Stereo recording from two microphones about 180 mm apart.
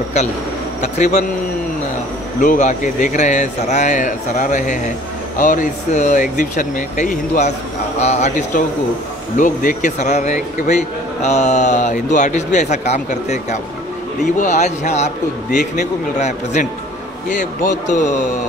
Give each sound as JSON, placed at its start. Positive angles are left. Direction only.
{"t": 0.9, "sound": "a man's voice", "side_deg": 40}
{"t": 2.4, "sound": "a man's voice", "side_deg": 45}